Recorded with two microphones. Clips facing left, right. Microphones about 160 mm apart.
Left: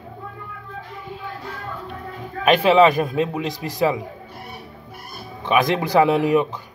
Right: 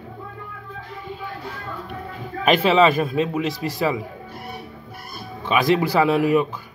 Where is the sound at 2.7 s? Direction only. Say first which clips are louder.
Left 2 dB; 15° left (ahead or behind).